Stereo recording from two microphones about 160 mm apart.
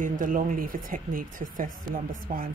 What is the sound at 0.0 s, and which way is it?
Speech, 55° right (ahead or behind).